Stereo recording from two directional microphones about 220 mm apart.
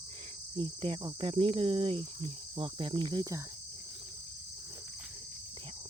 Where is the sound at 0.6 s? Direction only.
25° right (ahead or behind).